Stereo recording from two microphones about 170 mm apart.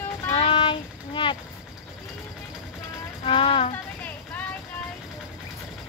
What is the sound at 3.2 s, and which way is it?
Speech, 30° left (ahead or behind).